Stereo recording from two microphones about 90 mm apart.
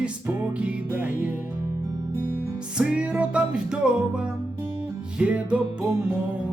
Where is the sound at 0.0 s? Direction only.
15° right (ahead or behind).